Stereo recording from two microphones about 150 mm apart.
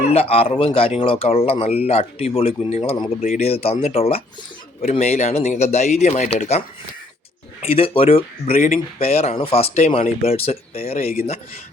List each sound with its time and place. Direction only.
0.1 s speech: 40° left (ahead or behind)
7.6 s speech: 40° left (ahead or behind)